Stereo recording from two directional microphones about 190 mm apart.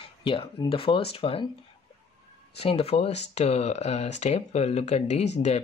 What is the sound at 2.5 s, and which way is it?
Speech, 30° left (ahead or behind).